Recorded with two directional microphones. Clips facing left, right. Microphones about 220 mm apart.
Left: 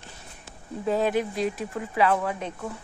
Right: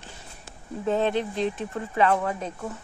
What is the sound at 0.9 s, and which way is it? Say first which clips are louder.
Speech: even; 5° left (ahead or behind).